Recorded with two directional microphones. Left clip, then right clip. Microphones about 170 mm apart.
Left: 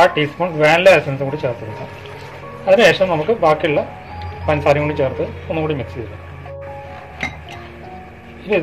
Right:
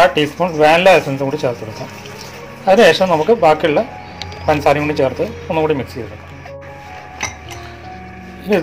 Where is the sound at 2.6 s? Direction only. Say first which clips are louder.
Right 2 dB; 40° right (ahead or behind).